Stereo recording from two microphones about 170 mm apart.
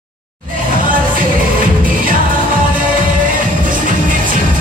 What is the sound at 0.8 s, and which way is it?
Music, 55° right (ahead or behind).